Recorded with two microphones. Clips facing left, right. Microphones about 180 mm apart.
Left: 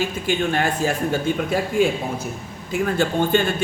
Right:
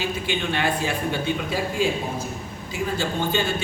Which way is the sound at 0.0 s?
45° left (ahead or behind).